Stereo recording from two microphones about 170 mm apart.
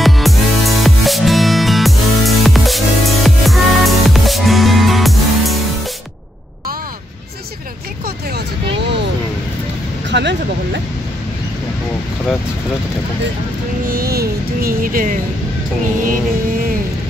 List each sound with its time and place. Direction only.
0.0 s music: centre (ahead or behind)
10.1 s a sound: 90° right
13.8 s music: 60° right (ahead or behind)